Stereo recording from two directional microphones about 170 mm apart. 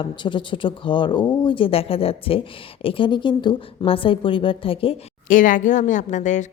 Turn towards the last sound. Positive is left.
turn(degrees=45)  # may be behind; listen again after turning